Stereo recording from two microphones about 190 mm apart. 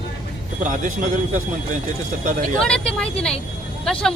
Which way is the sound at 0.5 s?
40° right (ahead or behind).